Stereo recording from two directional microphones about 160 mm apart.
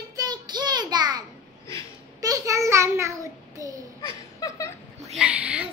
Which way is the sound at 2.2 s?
20° right (ahead or behind).